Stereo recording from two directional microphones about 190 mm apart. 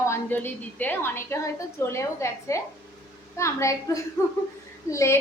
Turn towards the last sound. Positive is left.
turn(degrees=15)  # may be behind; listen again after turning